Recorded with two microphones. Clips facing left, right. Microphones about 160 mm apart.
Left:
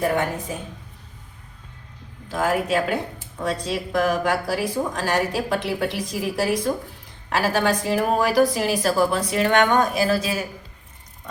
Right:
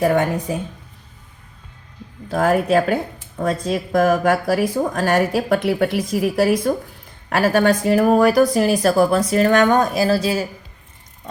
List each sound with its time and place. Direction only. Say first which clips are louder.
0.0 s speech: right 5 dB; 40° right (ahead or behind)
2.3 s speech: right 6 dB; 50° right (ahead or behind); by 10.4 s 30° right (ahead or behind)